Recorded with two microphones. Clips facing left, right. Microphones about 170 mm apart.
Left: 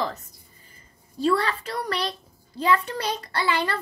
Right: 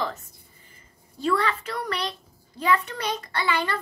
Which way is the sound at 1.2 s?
35° left (ahead or behind).